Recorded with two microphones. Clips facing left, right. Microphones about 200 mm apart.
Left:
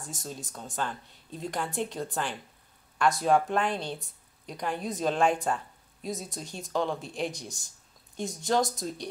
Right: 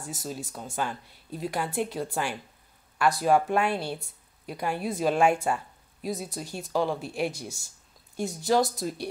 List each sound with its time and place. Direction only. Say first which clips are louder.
0.0 s speech: right 4 dB; 5° right (ahead or behind)